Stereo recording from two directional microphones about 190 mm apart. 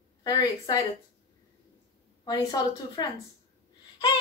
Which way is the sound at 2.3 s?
20° left (ahead or behind).